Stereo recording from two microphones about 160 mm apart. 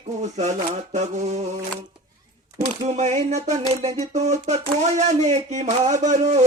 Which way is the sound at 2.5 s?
45° right (ahead or behind).